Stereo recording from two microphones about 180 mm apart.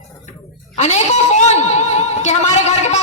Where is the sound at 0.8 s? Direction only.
40° left (ahead or behind).